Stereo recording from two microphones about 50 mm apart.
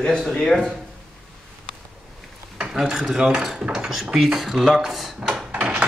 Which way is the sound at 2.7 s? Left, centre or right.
Centre.